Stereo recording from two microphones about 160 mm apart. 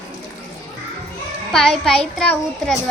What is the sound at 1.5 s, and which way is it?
Speech, centre (ahead or behind).